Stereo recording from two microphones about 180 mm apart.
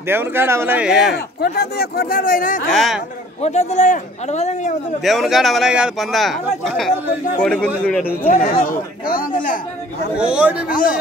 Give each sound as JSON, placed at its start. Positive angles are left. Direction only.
{"t": 0.1, "sound": "speech", "side_deg": -10}
{"t": 1.1, "sound": "speech", "side_deg": 60}
{"t": 2.7, "sound": "speech", "side_deg": 0}
{"t": 3.4, "sound": "speech", "side_deg": 40}
{"t": 5.0, "sound": "speech", "side_deg": 0}
{"t": 8.3, "sound": "speech", "side_deg": 45}
{"t": 10.1, "sound": "speech", "side_deg": -5}
{"t": 10.7, "sound": "speech", "side_deg": 50}